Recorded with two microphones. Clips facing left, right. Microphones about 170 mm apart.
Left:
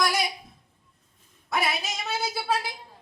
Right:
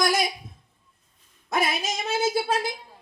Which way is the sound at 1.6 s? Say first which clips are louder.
Right 3 dB; 45° right (ahead or behind).